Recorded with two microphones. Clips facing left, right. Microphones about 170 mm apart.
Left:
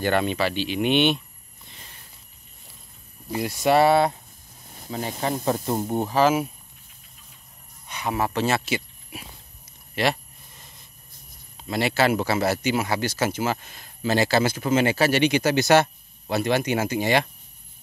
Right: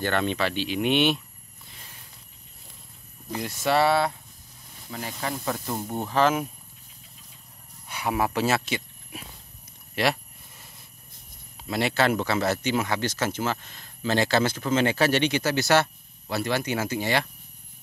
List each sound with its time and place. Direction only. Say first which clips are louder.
0.0 s speech: left 3 dB; 10° left (ahead or behind)
3.3 s speech: left 4 dB; 10° left (ahead or behind)
4.7 s speech: left 5 dB; 35° left (ahead or behind); by 6.4 s 10° left (ahead or behind)
7.9 s speech: even; 10° right (ahead or behind)
11.5 s speech: left 1 dB; centre (ahead or behind); by 17.3 s 15° left (ahead or behind)